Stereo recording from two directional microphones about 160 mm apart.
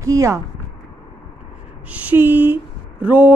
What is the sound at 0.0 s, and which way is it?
Speech, 20° right (ahead or behind).